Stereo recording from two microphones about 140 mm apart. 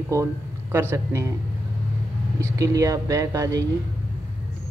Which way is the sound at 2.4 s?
25° right (ahead or behind).